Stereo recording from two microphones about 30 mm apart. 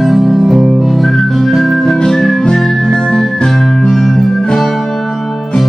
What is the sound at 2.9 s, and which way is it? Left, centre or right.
Music, left.